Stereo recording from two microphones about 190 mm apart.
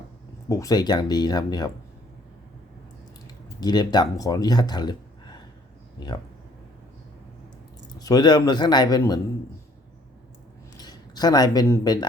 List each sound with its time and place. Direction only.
0.4 s speech: 20° left (ahead or behind)
3.2 s speech: 20° left (ahead or behind)
7.9 s speech: 20° left (ahead or behind)
10.8 s speech: 20° left (ahead or behind)